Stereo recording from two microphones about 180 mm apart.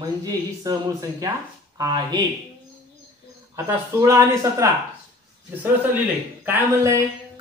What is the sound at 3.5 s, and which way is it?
Speech, 15° right (ahead or behind).